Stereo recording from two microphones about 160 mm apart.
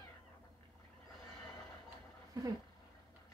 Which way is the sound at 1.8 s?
20° right (ahead or behind).